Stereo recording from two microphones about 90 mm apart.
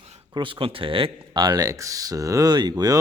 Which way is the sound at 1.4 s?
45° right (ahead or behind).